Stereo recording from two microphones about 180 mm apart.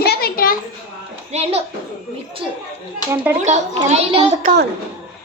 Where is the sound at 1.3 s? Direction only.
35° right (ahead or behind).